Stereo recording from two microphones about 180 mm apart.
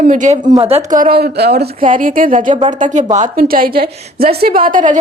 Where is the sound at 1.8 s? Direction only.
50° right (ahead or behind).